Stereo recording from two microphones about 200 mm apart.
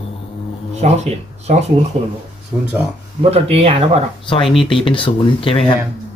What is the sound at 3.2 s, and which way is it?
Speech, 30° right (ahead or behind).